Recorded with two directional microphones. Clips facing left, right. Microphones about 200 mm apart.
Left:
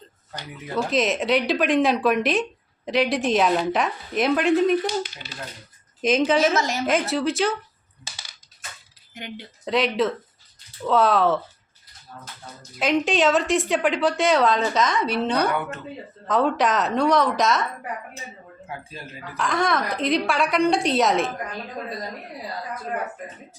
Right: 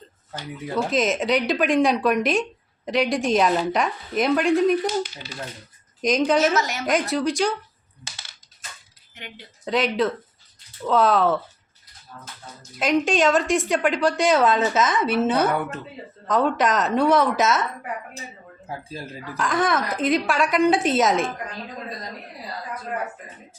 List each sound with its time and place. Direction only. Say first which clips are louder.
0.3 s speech: right 1 dB; centre (ahead or behind)
6.0 s speech: even; 5° left (ahead or behind)
6.6 s a woman's voice: left 1 dB; 30° left (ahead or behind)
6.8 s speech: right 2 dB; centre (ahead or behind)
9.6 s speech: even; centre (ahead or behind)
12.8 s speech: right 1 dB; centre (ahead or behind)
19.4 s speech: right 1 dB; centre (ahead or behind)